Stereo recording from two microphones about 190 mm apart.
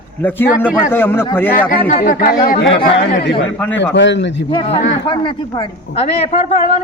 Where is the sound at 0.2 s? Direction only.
10° left (ahead or behind).